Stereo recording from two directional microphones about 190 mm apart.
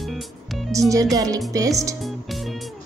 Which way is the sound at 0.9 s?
20° right (ahead or behind).